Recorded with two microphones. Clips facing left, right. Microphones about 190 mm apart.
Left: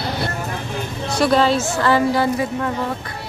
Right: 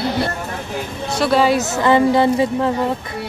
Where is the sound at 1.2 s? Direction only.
5° right (ahead or behind); by 2.6 s 25° right (ahead or behind).